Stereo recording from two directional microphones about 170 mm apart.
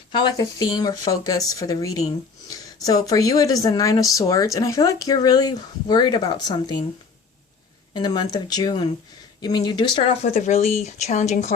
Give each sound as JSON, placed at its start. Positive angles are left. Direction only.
{"t": 0.1, "sound": "speech", "side_deg": 25}
{"t": 7.9, "sound": "speech", "side_deg": 25}
{"t": 10.3, "sound": "speech", "side_deg": 40}